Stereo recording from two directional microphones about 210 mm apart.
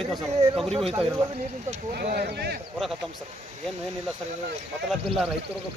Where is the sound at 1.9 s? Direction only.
50° right (ahead or behind).